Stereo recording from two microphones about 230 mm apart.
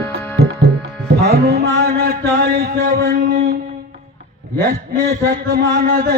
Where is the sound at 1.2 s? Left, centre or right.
Right.